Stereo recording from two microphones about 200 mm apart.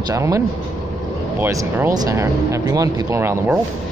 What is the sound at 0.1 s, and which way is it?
Speech, 15° right (ahead or behind).